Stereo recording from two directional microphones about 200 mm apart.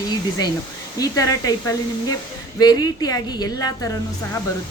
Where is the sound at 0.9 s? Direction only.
15° left (ahead or behind).